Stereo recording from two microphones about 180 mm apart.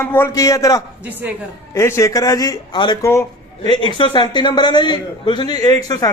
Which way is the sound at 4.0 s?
25° left (ahead or behind).